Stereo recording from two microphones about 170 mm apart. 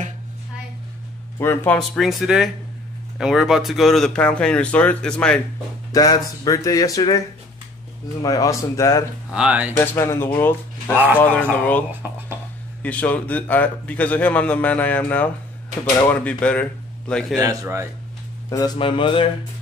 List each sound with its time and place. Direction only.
1.4 s a man's voice: 15° left (ahead or behind)
1.8 s speech: centre (ahead or behind)
5.9 s speech: 20° left (ahead or behind)
8.2 s speech: 20° left (ahead or behind)
9.3 s speech: 5° right (ahead or behind)
9.8 s a man's voice: 15° left (ahead or behind)
12.0 s speech: 10° right (ahead or behind)
12.8 s a man's voice: 10° left (ahead or behind)
17.4 s speech: 20° right (ahead or behind)
18.8 s mantra: 30° left (ahead or behind)